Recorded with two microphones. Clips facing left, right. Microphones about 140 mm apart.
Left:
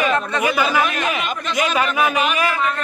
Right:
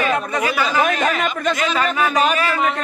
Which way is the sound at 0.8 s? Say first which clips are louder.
Right 2 dB; 45° right (ahead or behind).